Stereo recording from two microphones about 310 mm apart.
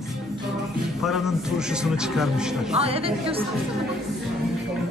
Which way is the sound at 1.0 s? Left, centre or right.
Centre.